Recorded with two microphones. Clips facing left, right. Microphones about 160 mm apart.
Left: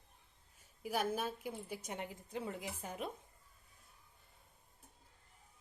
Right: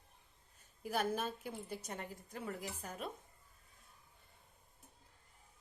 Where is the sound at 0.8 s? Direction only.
10° left (ahead or behind).